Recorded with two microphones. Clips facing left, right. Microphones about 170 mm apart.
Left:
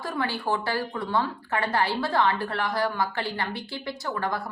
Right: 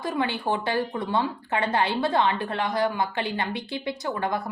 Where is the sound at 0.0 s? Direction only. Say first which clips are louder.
Right 2 dB; 20° right (ahead or behind).